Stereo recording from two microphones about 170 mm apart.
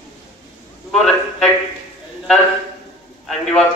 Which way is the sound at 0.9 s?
Centre (ahead or behind).